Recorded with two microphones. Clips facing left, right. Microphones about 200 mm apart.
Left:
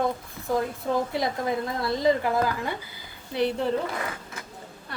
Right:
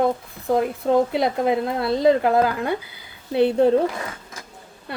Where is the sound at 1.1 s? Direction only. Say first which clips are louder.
Right 6 dB; 65° right (ahead or behind).